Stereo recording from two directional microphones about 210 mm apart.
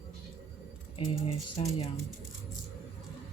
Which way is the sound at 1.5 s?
25° left (ahead or behind).